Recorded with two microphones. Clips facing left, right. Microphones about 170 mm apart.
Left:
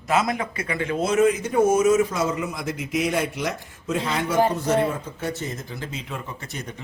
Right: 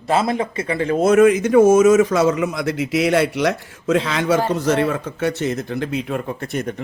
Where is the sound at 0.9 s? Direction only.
55° right (ahead or behind).